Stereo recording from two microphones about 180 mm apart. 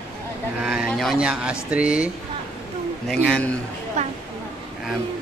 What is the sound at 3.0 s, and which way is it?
Speech, 5° left (ahead or behind).